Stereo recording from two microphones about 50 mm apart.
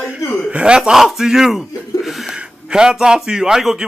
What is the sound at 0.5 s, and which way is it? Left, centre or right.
Speech, right.